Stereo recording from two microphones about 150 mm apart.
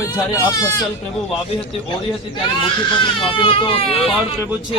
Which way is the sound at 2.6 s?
35° left (ahead or behind).